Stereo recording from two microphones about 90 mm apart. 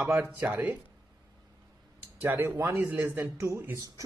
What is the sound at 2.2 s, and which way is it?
Speech, 25° right (ahead or behind).